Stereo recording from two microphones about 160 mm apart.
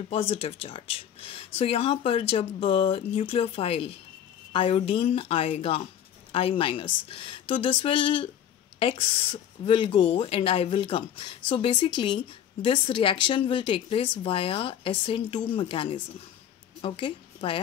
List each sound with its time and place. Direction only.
0.1 s a woman's voice: 40° left (ahead or behind)